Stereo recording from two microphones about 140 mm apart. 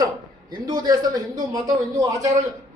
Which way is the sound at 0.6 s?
30° right (ahead or behind).